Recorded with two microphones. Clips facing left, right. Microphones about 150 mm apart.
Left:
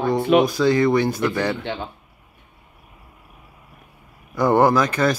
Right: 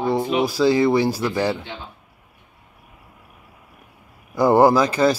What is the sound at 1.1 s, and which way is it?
Speech, 10° right (ahead or behind).